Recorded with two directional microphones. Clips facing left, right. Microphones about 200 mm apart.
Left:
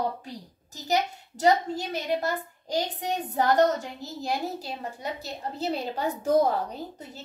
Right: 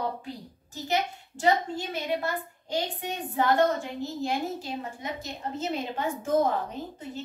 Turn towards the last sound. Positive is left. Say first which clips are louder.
# right 2 dB
turn(degrees=40)  # may be behind; listen again after turning